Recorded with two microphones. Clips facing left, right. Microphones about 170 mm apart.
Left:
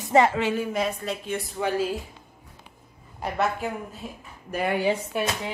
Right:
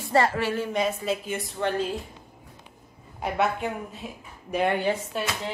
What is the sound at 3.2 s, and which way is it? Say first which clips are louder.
A woman's voice: right 1 dB; centre (ahead or behind).